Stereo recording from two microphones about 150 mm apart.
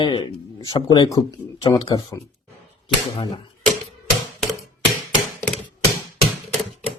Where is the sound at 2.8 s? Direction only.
40° left (ahead or behind).